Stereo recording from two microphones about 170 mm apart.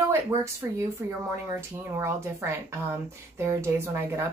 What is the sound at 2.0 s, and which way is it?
Speech, 15° right (ahead or behind).